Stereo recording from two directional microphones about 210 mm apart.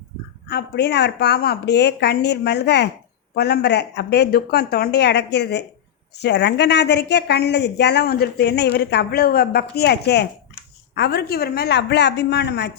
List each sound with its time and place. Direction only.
0.4 s a woman's voice: 50° left (ahead or behind)